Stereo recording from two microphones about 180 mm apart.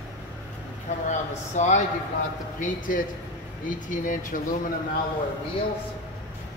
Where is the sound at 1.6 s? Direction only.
40° left (ahead or behind).